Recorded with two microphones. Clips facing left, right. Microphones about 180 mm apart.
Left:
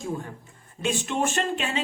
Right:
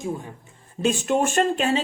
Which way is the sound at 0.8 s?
45° right (ahead or behind).